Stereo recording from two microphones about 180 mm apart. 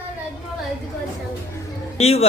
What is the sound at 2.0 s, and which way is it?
Speech, 35° left (ahead or behind).